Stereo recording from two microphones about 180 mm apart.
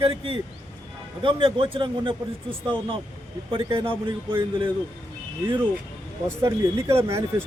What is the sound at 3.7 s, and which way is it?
Speech, 30° right (ahead or behind).